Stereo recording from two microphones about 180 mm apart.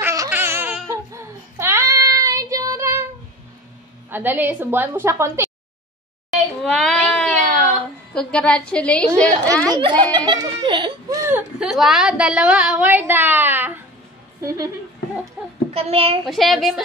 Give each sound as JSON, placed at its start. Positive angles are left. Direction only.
{"t": 0.0, "sound": "babbling", "side_deg": -15}
{"t": 4.1, "sound": "a woman's voice", "side_deg": -10}
{"t": 6.3, "sound": "a sound", "side_deg": 0}
{"t": 9.7, "sound": "a child's voice", "side_deg": -25}
{"t": 15.4, "sound": "a woman's voice", "side_deg": -5}
{"t": 15.7, "sound": "a child's voice", "side_deg": -35}
{"t": 16.3, "sound": "a woman's voice", "side_deg": 0}